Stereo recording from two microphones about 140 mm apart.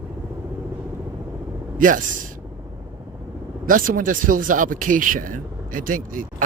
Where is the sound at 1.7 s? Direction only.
70° right (ahead or behind).